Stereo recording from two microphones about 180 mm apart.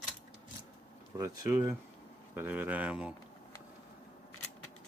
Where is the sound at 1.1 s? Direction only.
20° right (ahead or behind).